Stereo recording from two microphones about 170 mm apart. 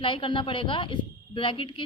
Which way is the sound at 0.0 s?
30° left (ahead or behind).